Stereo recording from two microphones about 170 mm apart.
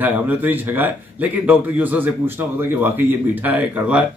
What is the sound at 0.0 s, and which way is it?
Speech, 10° right (ahead or behind).